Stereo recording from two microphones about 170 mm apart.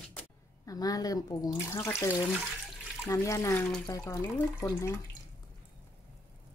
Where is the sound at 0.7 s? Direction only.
20° left (ahead or behind).